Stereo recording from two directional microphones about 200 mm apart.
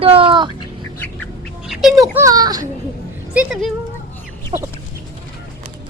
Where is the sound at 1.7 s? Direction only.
Centre (ahead or behind).